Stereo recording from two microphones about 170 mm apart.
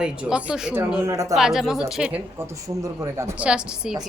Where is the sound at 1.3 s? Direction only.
Centre (ahead or behind).